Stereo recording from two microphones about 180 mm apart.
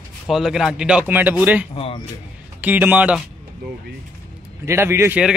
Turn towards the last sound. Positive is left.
turn(degrees=-10)  # may be behind; listen again after turning